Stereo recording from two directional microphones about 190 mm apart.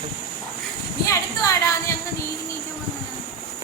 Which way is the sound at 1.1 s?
15° left (ahead or behind).